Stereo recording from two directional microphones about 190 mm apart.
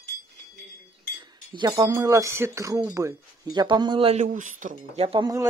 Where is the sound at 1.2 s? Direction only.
25° right (ahead or behind); by 5.0 s 45° right (ahead or behind).